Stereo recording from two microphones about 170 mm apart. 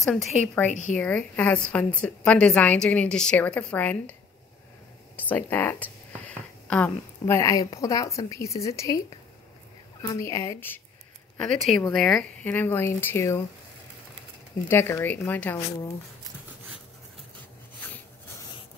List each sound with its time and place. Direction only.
0.0 s speech: centre (ahead or behind)
0.7 s speech: 45° left (ahead or behind)
0.9 s a woman's voice: 5° left (ahead or behind)
10.0 s a woman's voice: 20° left (ahead or behind)
11.3 s a woman's voice: centre (ahead or behind)
14.7 s a woman's voice: 15° left (ahead or behind)